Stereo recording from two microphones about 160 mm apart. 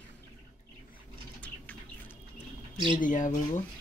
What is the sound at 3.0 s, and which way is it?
Speech, 50° left (ahead or behind).